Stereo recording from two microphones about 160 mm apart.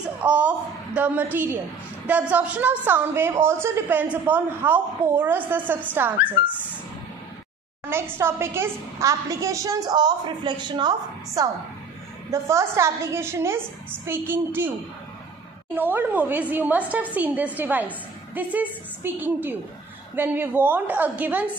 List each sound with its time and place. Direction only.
0.0 s a sound: 10° right (ahead or behind)
0.9 s a woman's voice: 10° right (ahead or behind)
7.9 s a woman's voice: 15° right (ahead or behind)
15.7 s a woman's voice: 10° right (ahead or behind)